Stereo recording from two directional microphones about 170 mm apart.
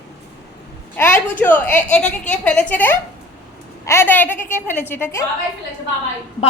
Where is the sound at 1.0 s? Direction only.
15° left (ahead or behind).